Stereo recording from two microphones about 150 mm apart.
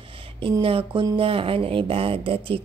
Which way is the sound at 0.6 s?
40° right (ahead or behind).